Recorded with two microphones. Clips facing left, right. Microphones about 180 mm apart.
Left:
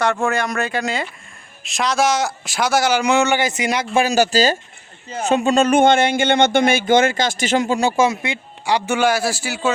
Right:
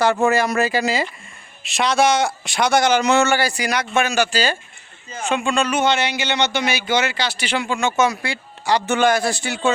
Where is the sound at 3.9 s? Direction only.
35° left (ahead or behind).